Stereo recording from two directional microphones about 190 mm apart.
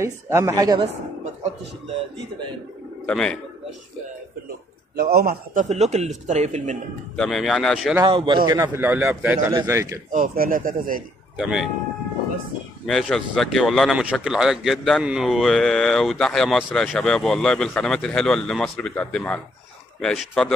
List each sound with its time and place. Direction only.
0.0 s a man's voice: 15° right (ahead or behind)
3.1 s speech: 5° left (ahead or behind)
4.9 s a man's voice: 55° right (ahead or behind); by 6.8 s 40° right (ahead or behind)
7.2 s speech: centre (ahead or behind)
8.0 s speech: 25° right (ahead or behind)
8.5 s a man's voice: 15° right (ahead or behind)
10.1 s speech: 50° right (ahead or behind)
11.3 s speech: 5° right (ahead or behind)
12.8 s speech: centre (ahead or behind)